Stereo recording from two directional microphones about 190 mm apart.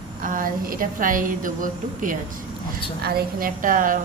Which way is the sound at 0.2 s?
45° right (ahead or behind).